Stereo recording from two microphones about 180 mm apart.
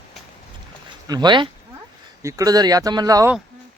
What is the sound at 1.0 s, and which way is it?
Speech, 25° right (ahead or behind).